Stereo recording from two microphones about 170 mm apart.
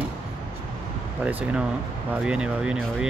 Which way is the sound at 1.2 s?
10° right (ahead or behind).